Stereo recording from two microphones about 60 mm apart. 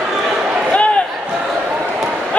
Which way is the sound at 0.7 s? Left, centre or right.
Left.